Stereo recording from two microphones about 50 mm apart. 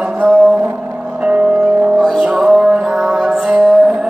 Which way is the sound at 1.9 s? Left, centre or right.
Centre.